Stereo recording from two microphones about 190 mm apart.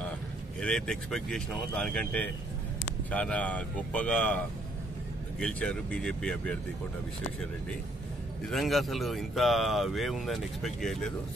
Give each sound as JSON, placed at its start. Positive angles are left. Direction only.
{"t": 0.6, "sound": "speech", "side_deg": 5}
{"t": 8.5, "sound": "speech", "side_deg": 0}